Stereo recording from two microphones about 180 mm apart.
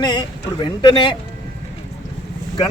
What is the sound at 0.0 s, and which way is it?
Speech, 25° left (ahead or behind).